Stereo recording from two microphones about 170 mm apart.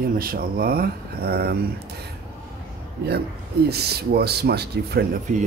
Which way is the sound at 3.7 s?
70° right (ahead or behind).